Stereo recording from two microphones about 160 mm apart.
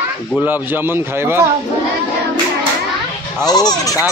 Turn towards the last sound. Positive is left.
turn(degrees=20)  # may be behind; listen again after turning